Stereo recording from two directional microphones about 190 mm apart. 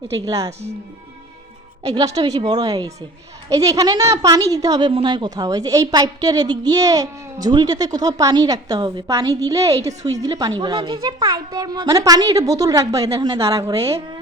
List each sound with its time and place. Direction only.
0.2 s a woman's voice: 20° right (ahead or behind)
1.8 s a woman's voice: 20° right (ahead or behind)